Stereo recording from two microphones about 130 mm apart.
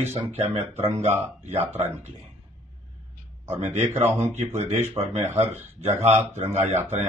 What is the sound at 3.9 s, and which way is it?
Speech, 20° right (ahead or behind).